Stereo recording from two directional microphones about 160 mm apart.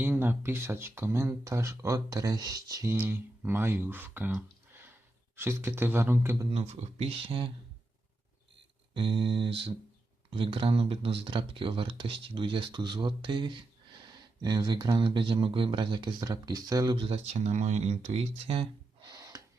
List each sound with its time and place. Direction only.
0.0 s speech: 10° right (ahead or behind)
4.3 s a sound: 10° right (ahead or behind)
5.4 s speech: 15° right (ahead or behind)
6.5 s speech: 40° right (ahead or behind)
9.0 s speech: 30° right (ahead or behind)
17.0 s speech: 40° right (ahead or behind)